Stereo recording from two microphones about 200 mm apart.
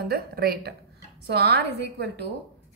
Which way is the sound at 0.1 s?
50° right (ahead or behind).